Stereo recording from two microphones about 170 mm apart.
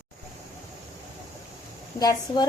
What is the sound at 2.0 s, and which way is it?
Speech, 20° left (ahead or behind).